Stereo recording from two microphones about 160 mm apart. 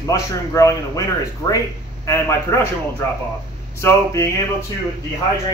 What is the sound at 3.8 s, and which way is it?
Speech, 15° left (ahead or behind).